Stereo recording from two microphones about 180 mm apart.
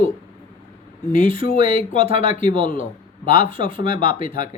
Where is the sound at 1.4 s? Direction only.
50° left (ahead or behind).